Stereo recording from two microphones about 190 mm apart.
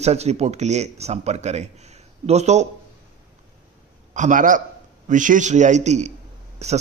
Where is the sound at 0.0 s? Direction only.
35° right (ahead or behind).